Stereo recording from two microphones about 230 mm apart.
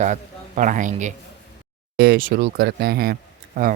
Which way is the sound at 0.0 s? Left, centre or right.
Right.